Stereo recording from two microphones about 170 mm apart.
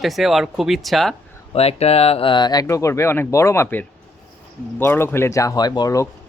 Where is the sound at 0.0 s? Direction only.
Centre (ahead or behind).